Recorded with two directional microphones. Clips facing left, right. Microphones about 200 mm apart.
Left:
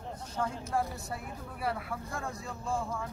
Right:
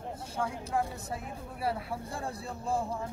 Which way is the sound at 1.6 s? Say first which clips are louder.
Right 1 dB; 30° right (ahead or behind).